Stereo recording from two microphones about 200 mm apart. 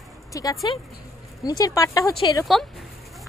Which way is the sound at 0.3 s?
20° left (ahead or behind).